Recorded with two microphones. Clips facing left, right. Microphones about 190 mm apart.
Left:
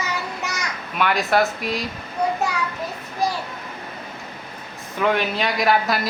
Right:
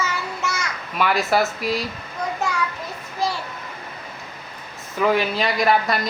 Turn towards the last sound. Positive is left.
turn(degrees=0)  # may be behind; listen again after turning